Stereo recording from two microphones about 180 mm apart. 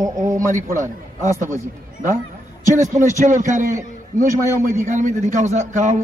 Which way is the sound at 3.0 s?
45° right (ahead or behind).